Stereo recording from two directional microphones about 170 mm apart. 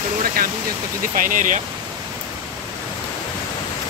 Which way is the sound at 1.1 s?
50° right (ahead or behind).